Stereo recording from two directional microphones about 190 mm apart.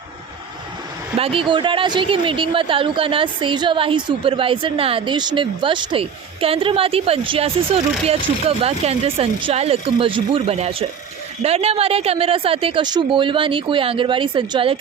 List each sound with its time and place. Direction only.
1.2 s speech: 30° right (ahead or behind)